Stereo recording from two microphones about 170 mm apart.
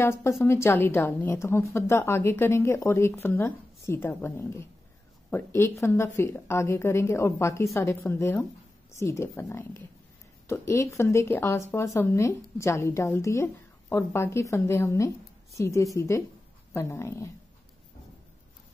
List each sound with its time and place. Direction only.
0.0 s speech: 15° left (ahead or behind)